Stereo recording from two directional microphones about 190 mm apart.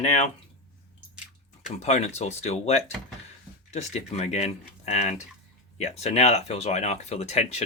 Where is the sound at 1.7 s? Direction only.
35° left (ahead or behind).